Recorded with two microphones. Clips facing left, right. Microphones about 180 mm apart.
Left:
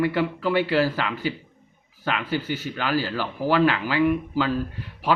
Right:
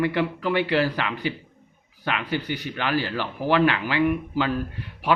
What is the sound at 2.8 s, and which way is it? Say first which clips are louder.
A man's voice: even; 40° left (ahead or behind).